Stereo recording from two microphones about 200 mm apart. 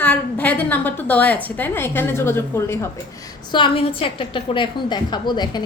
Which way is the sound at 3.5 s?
25° left (ahead or behind).